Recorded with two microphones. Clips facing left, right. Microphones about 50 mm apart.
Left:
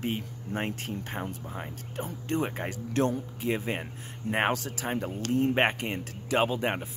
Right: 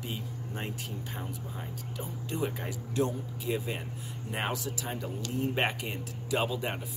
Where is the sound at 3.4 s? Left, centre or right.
Left.